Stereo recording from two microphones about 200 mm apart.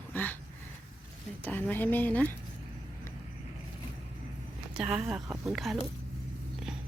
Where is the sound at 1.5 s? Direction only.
10° left (ahead or behind).